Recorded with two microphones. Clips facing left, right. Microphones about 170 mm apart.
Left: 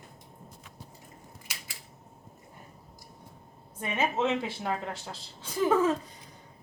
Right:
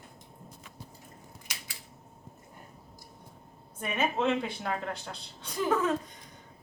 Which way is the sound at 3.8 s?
Centre (ahead or behind).